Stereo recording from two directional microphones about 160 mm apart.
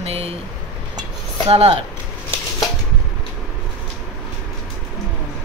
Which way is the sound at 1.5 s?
40° right (ahead or behind).